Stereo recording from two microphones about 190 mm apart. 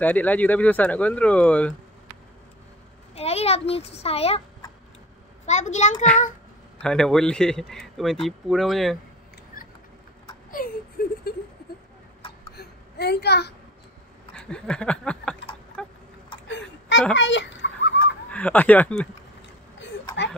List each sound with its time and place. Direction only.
0.0 s speech: 10° left (ahead or behind)
3.2 s a child's voice: 35° left (ahead or behind)
5.5 s a child's voice: 40° left (ahead or behind)
6.8 s speech: 5° left (ahead or behind)
10.5 s whimper: 50° left (ahead or behind)
12.5 s a sound: 60° left (ahead or behind)
14.3 s speech: 5° left (ahead or behind)
15.8 s a sound: 5° left (ahead or behind)
16.4 s a sound: 70° left (ahead or behind)
18.3 s speech: 10° left (ahead or behind)